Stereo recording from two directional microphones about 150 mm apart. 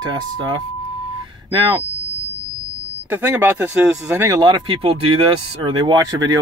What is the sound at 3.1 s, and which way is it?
Speech, 15° right (ahead or behind).